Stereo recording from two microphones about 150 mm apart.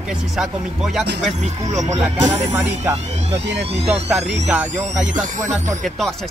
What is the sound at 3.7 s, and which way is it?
Speech, 40° right (ahead or behind).